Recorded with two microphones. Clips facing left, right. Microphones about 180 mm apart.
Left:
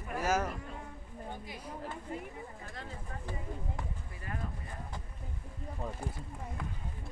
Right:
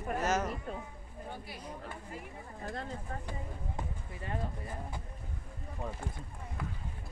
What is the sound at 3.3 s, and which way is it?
Speech, 25° right (ahead or behind).